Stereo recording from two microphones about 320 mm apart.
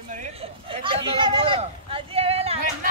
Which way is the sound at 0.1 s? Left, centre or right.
Centre.